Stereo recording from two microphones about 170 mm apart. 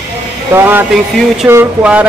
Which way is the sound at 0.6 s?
10° right (ahead or behind).